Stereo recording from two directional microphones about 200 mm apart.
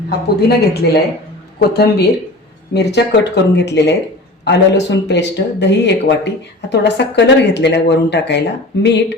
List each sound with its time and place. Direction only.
0.4 s speech: 55° left (ahead or behind)